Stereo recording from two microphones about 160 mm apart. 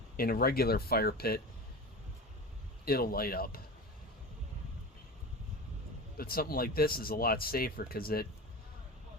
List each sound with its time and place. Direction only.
0.2 s speech: 70° left (ahead or behind)
2.8 s speech: 70° left (ahead or behind)
6.1 s speech: 70° left (ahead or behind)